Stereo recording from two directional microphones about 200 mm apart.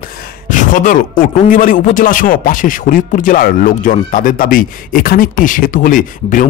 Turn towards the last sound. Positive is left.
turn(degrees=40)  # may be behind; listen again after turning